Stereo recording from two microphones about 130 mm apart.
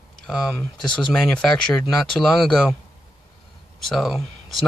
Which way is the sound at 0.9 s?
5° left (ahead or behind).